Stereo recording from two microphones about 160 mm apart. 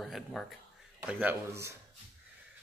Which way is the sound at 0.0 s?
5° left (ahead or behind).